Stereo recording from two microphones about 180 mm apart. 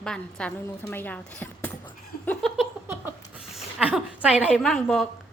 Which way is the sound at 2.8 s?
10° right (ahead or behind).